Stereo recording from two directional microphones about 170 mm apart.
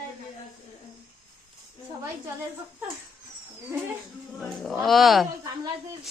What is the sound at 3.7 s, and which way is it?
Speech, 15° right (ahead or behind).